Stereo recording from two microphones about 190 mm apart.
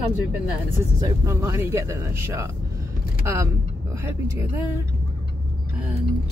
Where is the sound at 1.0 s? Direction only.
15° right (ahead or behind).